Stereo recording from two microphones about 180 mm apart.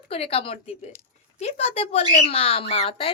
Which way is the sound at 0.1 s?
30° left (ahead or behind).